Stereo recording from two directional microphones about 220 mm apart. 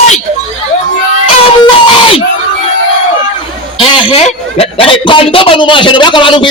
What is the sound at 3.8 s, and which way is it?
A man's voice, 25° left (ahead or behind).